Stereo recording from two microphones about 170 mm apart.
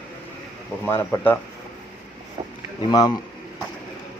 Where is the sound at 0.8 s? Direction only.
10° left (ahead or behind).